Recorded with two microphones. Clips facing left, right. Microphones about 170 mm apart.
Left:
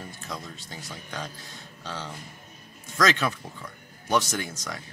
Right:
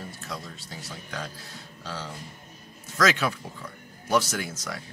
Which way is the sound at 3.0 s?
5° right (ahead or behind).